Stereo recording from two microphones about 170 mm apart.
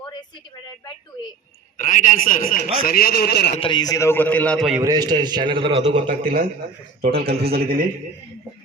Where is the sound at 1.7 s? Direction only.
50° left (ahead or behind); by 3.5 s 70° left (ahead or behind).